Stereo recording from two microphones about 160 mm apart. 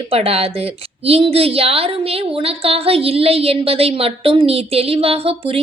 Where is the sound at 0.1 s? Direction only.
40° right (ahead or behind).